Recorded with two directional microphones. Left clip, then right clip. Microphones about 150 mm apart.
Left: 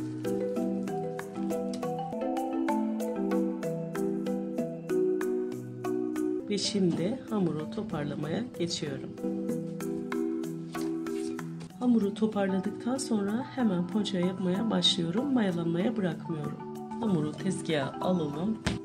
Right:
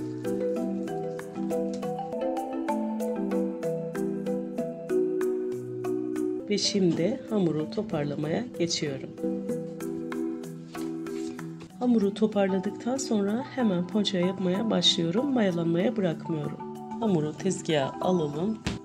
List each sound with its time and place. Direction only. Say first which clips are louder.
0.2 s music: right 2 dB; centre (ahead or behind)
6.5 s speech: right 7 dB; 30° right (ahead or behind)
7.9 s speech: right 3 dB; 45° right (ahead or behind)
11.8 s speech: right 3 dB; 45° right (ahead or behind)